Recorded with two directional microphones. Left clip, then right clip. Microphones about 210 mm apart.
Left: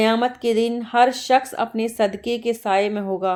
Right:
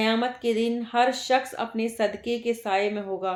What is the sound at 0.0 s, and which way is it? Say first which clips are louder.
Speech: left 6 dB; 40° left (ahead or behind).